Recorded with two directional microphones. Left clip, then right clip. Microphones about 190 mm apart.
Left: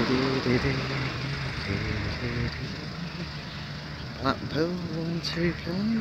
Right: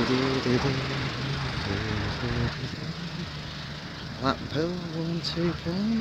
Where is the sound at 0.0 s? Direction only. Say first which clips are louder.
Even; 40° right (ahead or behind).